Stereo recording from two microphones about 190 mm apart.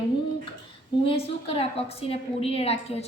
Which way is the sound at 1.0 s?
30° left (ahead or behind).